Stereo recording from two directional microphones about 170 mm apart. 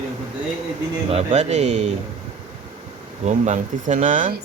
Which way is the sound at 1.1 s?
40° right (ahead or behind).